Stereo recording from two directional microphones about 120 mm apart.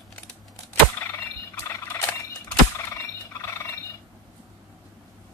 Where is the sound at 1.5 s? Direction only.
20° left (ahead or behind).